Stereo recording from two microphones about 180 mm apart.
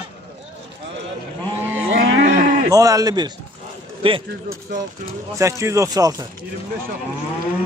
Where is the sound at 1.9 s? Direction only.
90° right.